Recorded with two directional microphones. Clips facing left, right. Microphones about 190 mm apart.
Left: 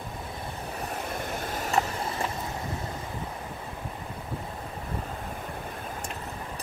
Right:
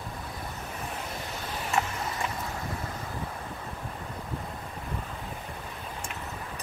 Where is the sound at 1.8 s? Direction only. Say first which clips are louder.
Left 2 dB; 35° left (ahead or behind).